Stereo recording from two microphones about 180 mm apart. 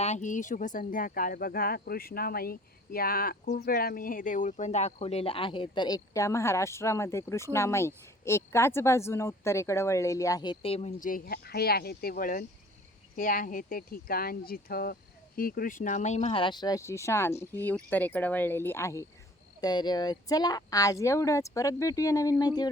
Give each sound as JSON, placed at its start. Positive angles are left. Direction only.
{"t": 0.0, "sound": "speech", "side_deg": 40}